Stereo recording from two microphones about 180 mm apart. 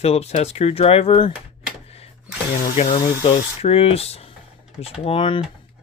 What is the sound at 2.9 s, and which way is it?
Speech, 25° left (ahead or behind).